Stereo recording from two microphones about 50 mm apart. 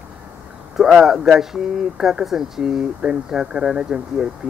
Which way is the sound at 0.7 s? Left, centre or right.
Centre.